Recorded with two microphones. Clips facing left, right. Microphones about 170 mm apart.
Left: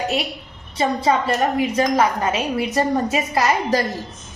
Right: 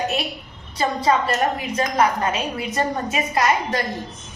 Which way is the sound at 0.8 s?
25° left (ahead or behind).